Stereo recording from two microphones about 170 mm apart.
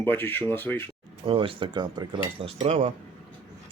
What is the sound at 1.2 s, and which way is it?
Speech, 30° right (ahead or behind).